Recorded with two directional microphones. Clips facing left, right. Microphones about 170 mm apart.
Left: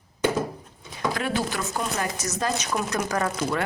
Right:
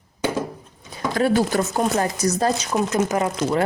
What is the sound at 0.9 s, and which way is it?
Speech, 35° right (ahead or behind).